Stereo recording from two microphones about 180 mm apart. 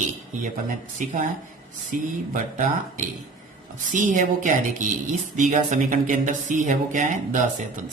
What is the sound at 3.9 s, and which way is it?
Speech, 45° right (ahead or behind).